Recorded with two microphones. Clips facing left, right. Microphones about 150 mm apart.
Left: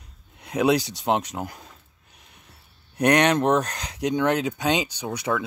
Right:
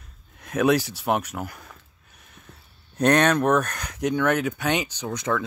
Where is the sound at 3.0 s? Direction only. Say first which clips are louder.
Even; 15° left (ahead or behind).